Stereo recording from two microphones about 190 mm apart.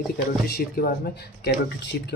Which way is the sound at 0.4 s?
55° left (ahead or behind).